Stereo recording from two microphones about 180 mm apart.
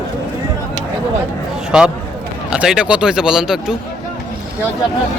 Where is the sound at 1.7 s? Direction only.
5° right (ahead or behind).